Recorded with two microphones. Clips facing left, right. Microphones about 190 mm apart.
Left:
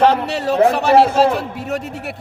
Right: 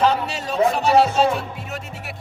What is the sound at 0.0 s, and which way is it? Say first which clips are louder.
Speech: left 5 dB; 65° left (ahead or behind).